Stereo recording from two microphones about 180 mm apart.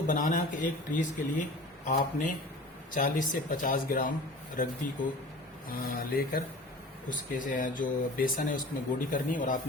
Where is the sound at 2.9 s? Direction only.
45° left (ahead or behind).